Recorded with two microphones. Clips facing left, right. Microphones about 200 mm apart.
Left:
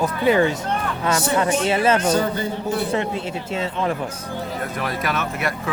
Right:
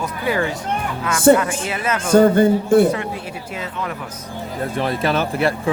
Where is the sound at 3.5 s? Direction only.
25° left (ahead or behind).